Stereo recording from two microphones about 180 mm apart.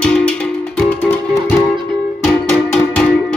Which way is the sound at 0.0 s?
5° left (ahead or behind).